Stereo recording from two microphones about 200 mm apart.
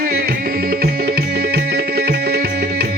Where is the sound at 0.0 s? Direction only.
50° right (ahead or behind).